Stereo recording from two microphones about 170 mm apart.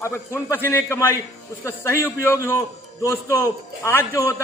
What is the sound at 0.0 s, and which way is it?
A man's voice, 15° left (ahead or behind).